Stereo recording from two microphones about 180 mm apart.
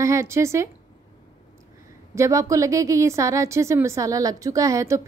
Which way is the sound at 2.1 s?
15° right (ahead or behind).